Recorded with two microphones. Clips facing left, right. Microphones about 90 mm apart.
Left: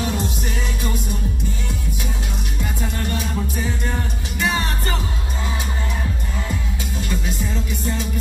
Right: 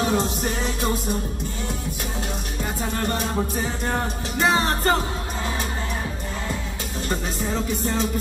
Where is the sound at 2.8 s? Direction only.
40° right (ahead or behind).